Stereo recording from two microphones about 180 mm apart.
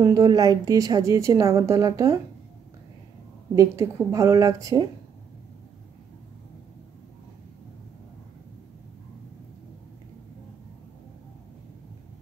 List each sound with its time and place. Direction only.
0.0 s a woman's voice: 20° right (ahead or behind)
3.5 s a woman's voice: 15° right (ahead or behind)